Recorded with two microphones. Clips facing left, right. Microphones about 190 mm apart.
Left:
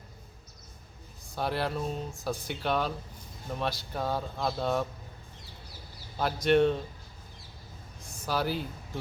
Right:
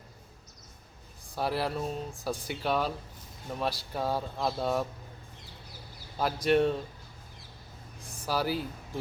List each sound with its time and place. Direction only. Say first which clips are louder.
1.4 s speech: even; 5° right (ahead or behind)
6.1 s speech: left 1 dB; 5° right (ahead or behind)
8.0 s a sound: even; 30° right (ahead or behind)
8.3 s speech: even; 5° right (ahead or behind)